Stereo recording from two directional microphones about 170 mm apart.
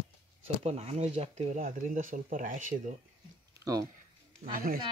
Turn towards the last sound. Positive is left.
turn(degrees=-60)  # may be behind; listen again after turning